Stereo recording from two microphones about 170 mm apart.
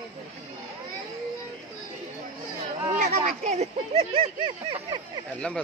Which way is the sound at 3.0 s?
40° right (ahead or behind).